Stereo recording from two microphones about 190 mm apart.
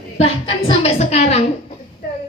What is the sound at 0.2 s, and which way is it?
A woman's voice, 30° left (ahead or behind).